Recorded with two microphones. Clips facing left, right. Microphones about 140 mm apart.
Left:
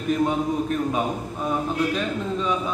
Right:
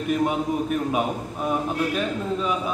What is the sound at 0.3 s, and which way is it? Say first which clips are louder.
A man's voice: even; 10° right (ahead or behind).